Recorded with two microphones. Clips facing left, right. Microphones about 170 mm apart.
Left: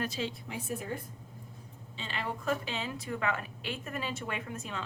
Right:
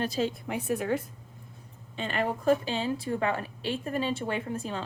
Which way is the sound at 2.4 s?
35° right (ahead or behind).